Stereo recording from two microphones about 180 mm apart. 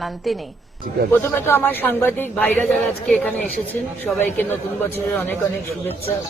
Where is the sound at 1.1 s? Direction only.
10° left (ahead or behind).